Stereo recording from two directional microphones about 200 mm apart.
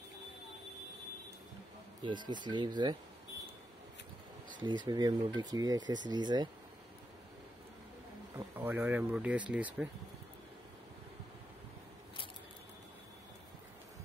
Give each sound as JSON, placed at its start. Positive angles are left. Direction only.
{"t": 2.0, "sound": "speech", "side_deg": -20}
{"t": 4.6, "sound": "speech", "side_deg": -20}
{"t": 8.5, "sound": "speech", "side_deg": -10}